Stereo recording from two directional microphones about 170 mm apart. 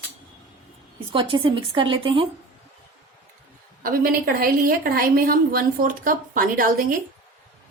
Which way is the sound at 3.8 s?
60° right (ahead or behind).